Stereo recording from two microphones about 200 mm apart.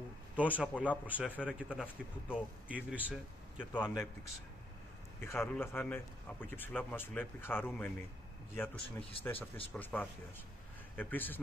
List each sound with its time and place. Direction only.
0.4 s a man's voice: 5° left (ahead or behind)
0.8 s speech: 5° right (ahead or behind)
1.7 s a man's voice: 10° left (ahead or behind)
2.3 s speech: 5° right (ahead or behind)
3.7 s a man's voice: 10° left (ahead or behind)
5.2 s a man's voice: 10° left (ahead or behind)
8.8 s speech: 30° left (ahead or behind)
9.2 s a man's voice: 10° left (ahead or behind)